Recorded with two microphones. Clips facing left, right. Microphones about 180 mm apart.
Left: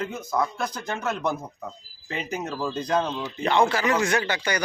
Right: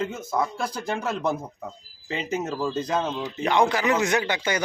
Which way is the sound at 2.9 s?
5° right (ahead or behind).